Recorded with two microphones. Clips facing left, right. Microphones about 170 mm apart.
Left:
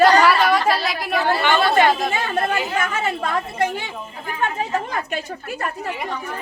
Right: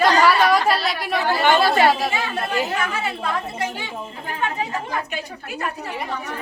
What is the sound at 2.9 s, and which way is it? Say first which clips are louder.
Speech: left 2 dB; 50° left (ahead or behind).